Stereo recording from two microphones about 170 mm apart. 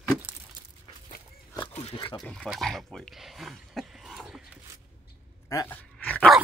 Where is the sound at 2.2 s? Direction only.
Centre (ahead or behind).